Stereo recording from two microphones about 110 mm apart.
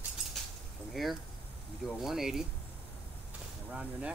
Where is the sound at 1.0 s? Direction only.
Centre (ahead or behind).